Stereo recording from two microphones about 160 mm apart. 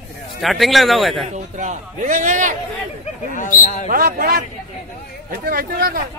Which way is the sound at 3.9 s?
65° right (ahead or behind).